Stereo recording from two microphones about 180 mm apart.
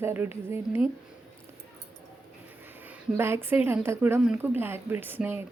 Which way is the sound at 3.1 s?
15° right (ahead or behind).